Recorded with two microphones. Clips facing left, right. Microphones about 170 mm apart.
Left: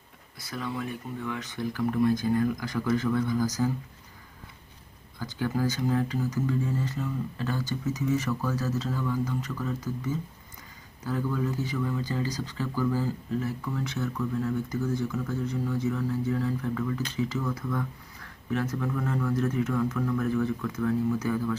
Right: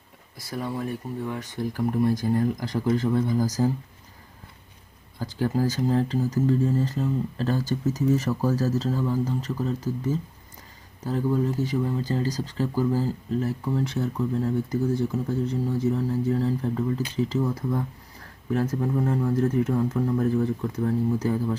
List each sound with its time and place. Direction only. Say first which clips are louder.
0.4 s speech: right 3 dB; 35° right (ahead or behind)
5.2 s speech: right 3 dB; 35° right (ahead or behind)